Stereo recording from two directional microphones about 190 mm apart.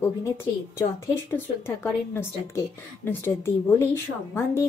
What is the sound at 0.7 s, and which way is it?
A woman's voice, 10° left (ahead or behind).